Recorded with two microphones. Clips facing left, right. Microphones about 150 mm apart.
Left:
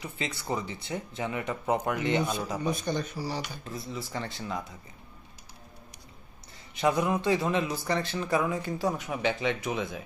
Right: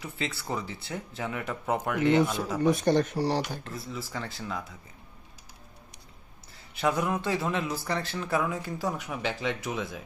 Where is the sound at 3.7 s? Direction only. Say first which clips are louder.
Left 1 dB; 5° right (ahead or behind).